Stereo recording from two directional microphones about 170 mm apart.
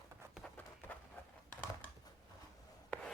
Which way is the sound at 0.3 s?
10° left (ahead or behind).